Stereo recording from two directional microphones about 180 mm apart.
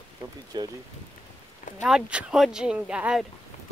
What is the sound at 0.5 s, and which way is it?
Speech, 25° right (ahead or behind).